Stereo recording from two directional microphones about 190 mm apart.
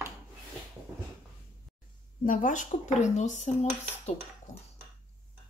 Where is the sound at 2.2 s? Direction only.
45° left (ahead or behind).